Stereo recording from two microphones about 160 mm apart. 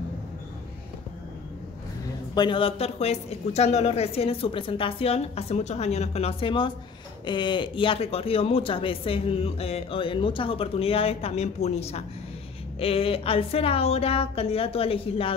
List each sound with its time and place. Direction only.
2.3 s speech: 30° left (ahead or behind)